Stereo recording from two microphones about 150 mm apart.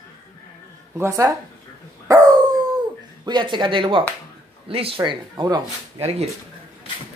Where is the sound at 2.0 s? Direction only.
25° right (ahead or behind).